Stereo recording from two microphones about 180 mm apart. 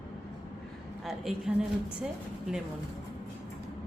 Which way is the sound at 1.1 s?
Centre (ahead or behind).